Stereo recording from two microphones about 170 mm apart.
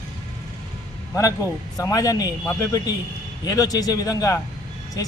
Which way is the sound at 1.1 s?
20° left (ahead or behind).